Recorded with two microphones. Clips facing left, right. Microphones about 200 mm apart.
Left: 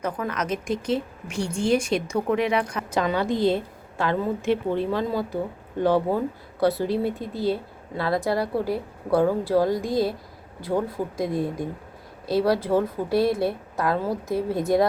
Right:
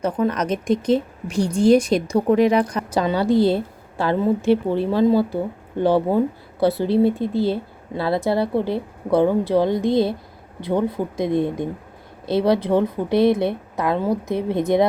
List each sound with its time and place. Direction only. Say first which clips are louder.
0.0 s a woman's voice: right 7 dB; 30° right (ahead or behind)